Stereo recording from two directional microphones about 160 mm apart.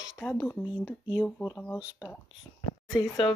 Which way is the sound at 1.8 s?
10° right (ahead or behind).